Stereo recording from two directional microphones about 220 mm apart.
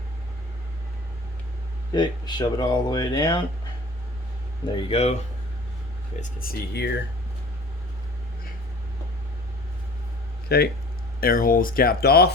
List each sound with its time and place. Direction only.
1.9 s speech: 20° left (ahead or behind)
4.9 s speech: 30° left (ahead or behind)
6.1 s speech: 40° left (ahead or behind)
10.5 s speech: 45° left (ahead or behind)